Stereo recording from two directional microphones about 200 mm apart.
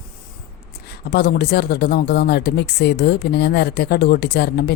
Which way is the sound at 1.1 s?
55° left (ahead or behind).